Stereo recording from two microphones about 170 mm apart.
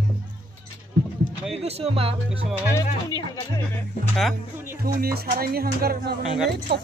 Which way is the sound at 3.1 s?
20° left (ahead or behind).